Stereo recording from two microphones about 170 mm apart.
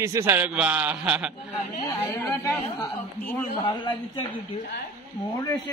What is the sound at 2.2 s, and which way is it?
Speech, 10° left (ahead or behind).